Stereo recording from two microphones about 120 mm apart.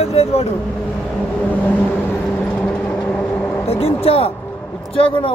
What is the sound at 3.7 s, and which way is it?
Speech, 55° left (ahead or behind).